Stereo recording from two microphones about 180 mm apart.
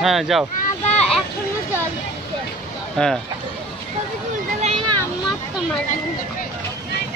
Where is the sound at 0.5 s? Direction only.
40° left (ahead or behind).